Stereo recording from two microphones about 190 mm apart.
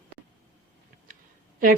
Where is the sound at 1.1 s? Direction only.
45° right (ahead or behind).